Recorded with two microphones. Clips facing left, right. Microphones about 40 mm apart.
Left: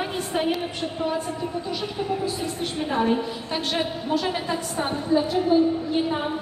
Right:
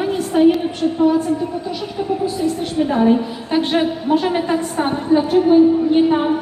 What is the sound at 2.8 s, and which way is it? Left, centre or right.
Speech, centre.